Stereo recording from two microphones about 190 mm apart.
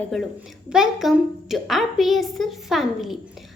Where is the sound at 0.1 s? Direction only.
Centre (ahead or behind).